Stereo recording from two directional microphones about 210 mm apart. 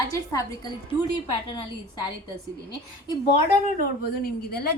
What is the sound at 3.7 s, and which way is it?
Speech, 45° left (ahead or behind).